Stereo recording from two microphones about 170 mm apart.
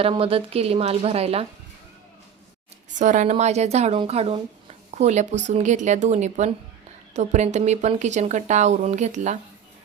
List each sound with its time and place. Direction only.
0.0 s a woman's voice: 35° right (ahead or behind)
3.0 s speech: 45° right (ahead or behind)